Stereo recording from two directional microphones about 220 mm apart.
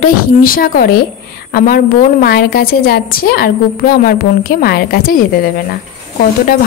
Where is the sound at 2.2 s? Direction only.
45° left (ahead or behind).